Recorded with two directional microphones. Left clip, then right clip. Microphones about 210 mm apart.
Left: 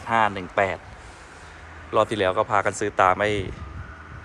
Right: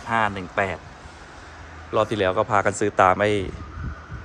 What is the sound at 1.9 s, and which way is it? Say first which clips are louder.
Speech: even; 10° right (ahead or behind).